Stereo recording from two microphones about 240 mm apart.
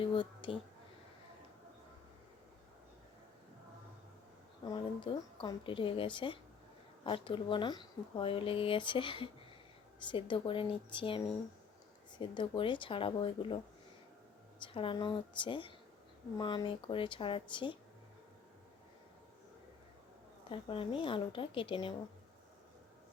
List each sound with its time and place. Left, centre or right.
0.0 s speech: left
4.6 s speech: centre
14.6 s speech: left
20.5 s speech: left